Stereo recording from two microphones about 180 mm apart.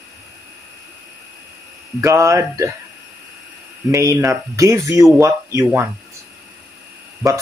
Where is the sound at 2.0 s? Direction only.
15° right (ahead or behind).